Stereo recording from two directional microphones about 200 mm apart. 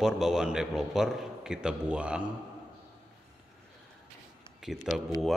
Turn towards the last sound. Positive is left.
turn(degrees=0)  # may be behind; listen again after turning